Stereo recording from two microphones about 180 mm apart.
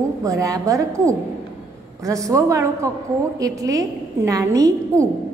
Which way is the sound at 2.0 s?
20° right (ahead or behind).